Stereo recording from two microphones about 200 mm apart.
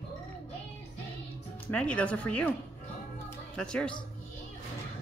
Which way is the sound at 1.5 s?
5° left (ahead or behind).